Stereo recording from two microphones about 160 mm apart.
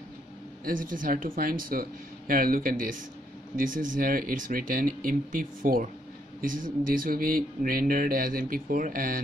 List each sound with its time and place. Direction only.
0.7 s speech: 60° right (ahead or behind)